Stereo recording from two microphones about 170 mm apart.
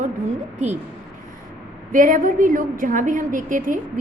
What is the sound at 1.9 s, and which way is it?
A woman's voice, 55° right (ahead or behind).